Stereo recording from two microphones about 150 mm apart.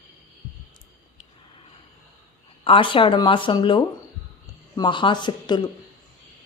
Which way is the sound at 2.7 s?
35° left (ahead or behind).